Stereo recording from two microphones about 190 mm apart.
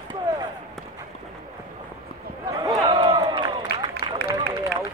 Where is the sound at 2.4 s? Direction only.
25° right (ahead or behind).